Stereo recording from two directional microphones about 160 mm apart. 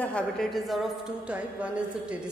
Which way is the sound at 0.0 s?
5° left (ahead or behind).